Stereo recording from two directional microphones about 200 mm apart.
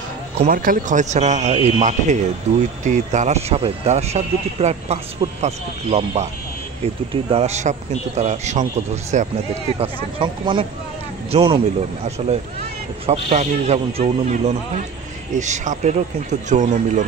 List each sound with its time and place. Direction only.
0.4 s speech: 45° right (ahead or behind)
7.2 s speech: 30° right (ahead or behind)